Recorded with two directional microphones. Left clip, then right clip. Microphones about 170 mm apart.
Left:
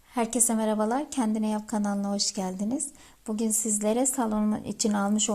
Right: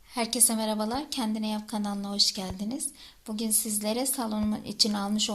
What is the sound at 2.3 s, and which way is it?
A woman's voice, 30° left (ahead or behind).